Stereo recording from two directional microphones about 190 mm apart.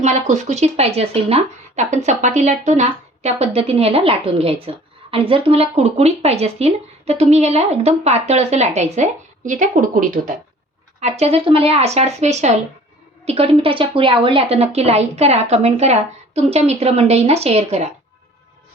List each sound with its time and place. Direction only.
0.0 s speech: 40° right (ahead or behind)
11.0 s speech: 35° right (ahead or behind)